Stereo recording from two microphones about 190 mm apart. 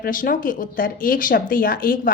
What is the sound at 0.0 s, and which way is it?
A woman's voice, 45° left (ahead or behind).